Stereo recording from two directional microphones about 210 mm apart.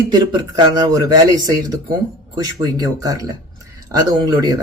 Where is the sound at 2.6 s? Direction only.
15° right (ahead or behind).